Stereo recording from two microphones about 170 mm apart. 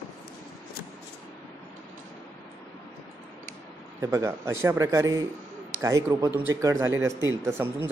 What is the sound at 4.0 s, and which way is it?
Speech, 15° right (ahead or behind).